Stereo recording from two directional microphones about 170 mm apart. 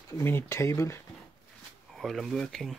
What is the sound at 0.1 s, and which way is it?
Speech, 15° left (ahead or behind).